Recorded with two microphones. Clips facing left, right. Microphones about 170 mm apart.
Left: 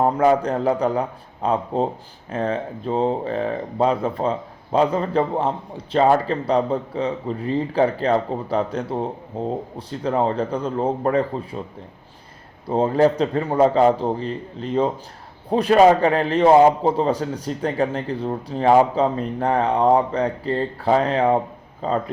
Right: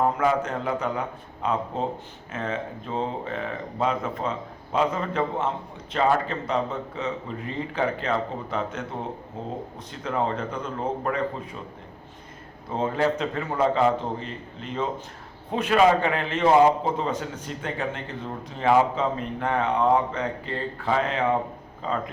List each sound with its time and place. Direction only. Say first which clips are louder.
0.0 s speech: left 6 dB; 35° left (ahead or behind)
12.6 s a man's voice: left 7 dB; 35° left (ahead or behind)